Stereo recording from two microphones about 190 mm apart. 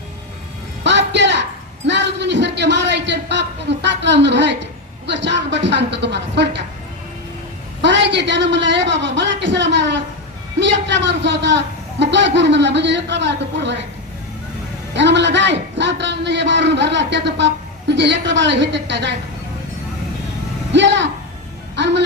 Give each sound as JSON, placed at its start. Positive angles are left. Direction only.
{"t": 0.9, "sound": "music", "side_deg": -65}
{"t": 1.9, "sound": "a sound", "side_deg": -65}
{"t": 7.8, "sound": "a man's voice", "side_deg": -70}
{"t": 14.9, "sound": "a man's voice", "side_deg": -65}
{"t": 20.7, "sound": "a man's voice", "side_deg": -70}